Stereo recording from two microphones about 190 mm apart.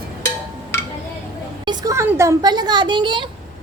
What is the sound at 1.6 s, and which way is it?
Speech, 20° right (ahead or behind).